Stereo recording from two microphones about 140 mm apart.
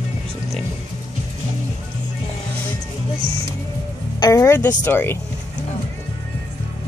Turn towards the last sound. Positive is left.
turn(degrees=15)  # may be behind; listen again after turning